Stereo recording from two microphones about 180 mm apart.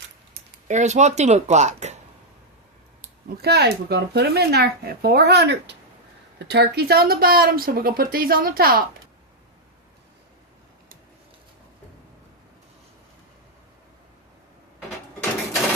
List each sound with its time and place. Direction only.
0.7 s speech: 40° right (ahead or behind)
3.2 s speech: 60° right (ahead or behind)